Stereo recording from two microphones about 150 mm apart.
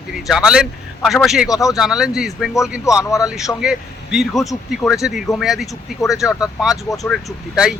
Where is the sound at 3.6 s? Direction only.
5° right (ahead or behind).